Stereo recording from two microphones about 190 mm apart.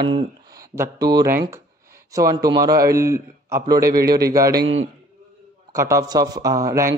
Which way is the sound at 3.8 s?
50° right (ahead or behind).